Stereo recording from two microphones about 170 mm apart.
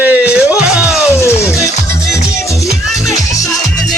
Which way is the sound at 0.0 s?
10° right (ahead or behind).